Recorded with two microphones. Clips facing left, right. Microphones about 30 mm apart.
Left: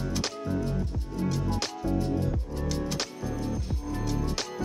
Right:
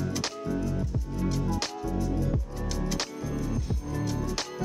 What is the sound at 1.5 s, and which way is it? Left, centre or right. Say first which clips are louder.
Music: even; centre.